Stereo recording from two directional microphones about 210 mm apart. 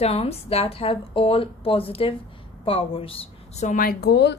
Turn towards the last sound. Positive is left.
turn(degrees=50)  # may be behind; listen again after turning